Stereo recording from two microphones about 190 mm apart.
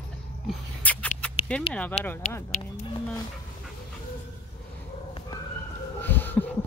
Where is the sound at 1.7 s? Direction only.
10° left (ahead or behind).